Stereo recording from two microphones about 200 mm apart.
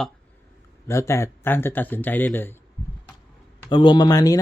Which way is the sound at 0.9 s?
15° left (ahead or behind).